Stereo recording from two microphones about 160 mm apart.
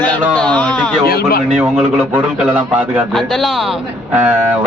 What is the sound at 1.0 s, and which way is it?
Speech, 70° left (ahead or behind).